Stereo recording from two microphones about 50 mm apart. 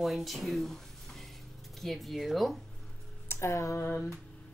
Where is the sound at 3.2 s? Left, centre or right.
Left.